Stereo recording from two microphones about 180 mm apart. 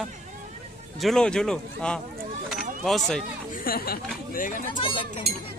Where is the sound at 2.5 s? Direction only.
Centre (ahead or behind).